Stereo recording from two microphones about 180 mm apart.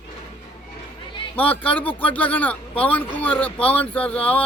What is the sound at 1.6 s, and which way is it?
Speech, 10° left (ahead or behind).